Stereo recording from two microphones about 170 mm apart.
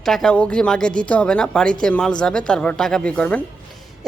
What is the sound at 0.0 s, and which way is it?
A woman's voice, centre (ahead or behind).